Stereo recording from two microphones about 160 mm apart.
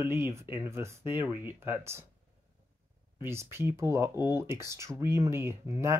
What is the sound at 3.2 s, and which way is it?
Speech, 15° right (ahead or behind).